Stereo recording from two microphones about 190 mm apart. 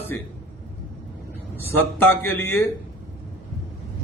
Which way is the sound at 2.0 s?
10° left (ahead or behind).